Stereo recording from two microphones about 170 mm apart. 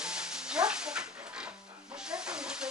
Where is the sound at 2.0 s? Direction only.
5° right (ahead or behind).